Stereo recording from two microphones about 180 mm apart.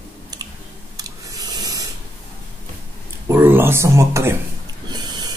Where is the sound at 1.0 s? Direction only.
20° right (ahead or behind).